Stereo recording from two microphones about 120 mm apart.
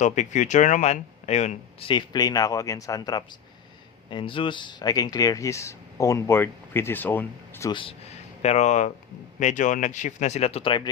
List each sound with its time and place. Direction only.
0.0 s speech: 90° left; by 1.9 s 65° left (ahead or behind)
1.9 s speech: 35° left (ahead or behind)
4.1 s speech: 45° left (ahead or behind); by 7.7 s 20° left (ahead or behind)
7.7 s speech: 45° left (ahead or behind)
8.1 s a sound: 65° left (ahead or behind)
9.4 s speech: 90° left; by 10.8 s 45° left (ahead or behind)